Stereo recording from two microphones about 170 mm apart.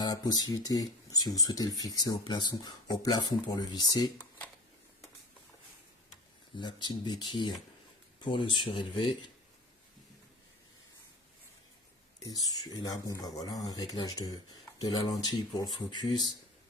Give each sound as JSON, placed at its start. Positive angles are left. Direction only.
{"t": 0.0, "sound": "speech", "side_deg": 25}
{"t": 6.6, "sound": "speech", "side_deg": 25}
{"t": 12.2, "sound": "speech", "side_deg": 20}